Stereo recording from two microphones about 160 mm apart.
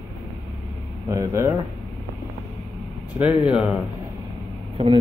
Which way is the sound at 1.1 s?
15° right (ahead or behind).